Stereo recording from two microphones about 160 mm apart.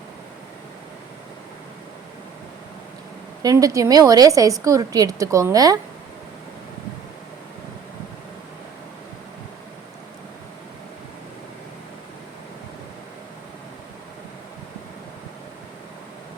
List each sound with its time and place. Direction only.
3.4 s a woman's voice: 20° right (ahead or behind)